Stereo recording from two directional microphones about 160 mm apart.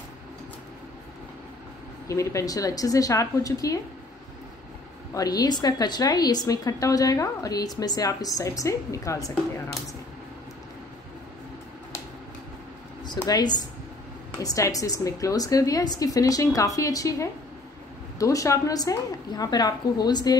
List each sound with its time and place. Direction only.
2.0 s a woman's voice: 20° left (ahead or behind)
5.1 s a woman's voice: 25° left (ahead or behind)
13.0 s a woman's voice: 25° left (ahead or behind)